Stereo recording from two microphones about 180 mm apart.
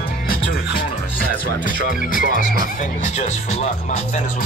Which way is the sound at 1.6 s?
50° left (ahead or behind).